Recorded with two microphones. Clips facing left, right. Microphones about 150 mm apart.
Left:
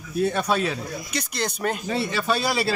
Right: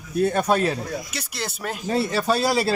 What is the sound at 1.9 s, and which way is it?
Speech, 40° right (ahead or behind).